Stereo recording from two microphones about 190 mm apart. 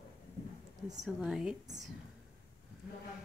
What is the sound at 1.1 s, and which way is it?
Speech, 5° right (ahead or behind).